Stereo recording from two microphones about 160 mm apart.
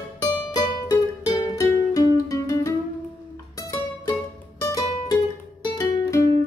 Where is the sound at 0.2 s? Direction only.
25° left (ahead or behind).